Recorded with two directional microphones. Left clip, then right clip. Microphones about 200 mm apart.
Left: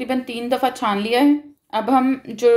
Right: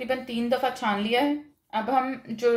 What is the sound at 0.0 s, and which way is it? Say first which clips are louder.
A woman's voice: left 4 dB; 45° left (ahead or behind).